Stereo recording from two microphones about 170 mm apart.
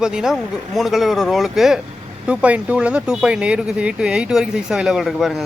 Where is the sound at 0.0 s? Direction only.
5° right (ahead or behind).